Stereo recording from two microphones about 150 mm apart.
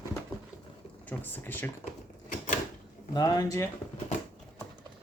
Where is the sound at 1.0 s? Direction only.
10° left (ahead or behind).